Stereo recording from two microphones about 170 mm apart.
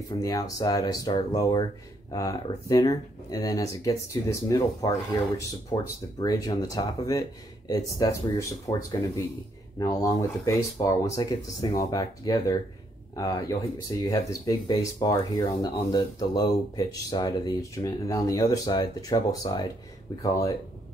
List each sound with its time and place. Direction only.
0.2 s speech: 20° left (ahead or behind)